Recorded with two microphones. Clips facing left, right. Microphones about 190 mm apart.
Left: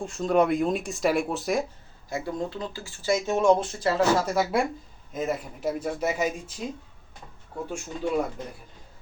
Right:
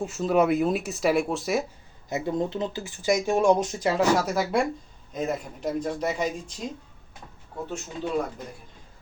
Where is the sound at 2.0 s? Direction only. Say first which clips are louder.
Right 3 dB; 20° right (ahead or behind).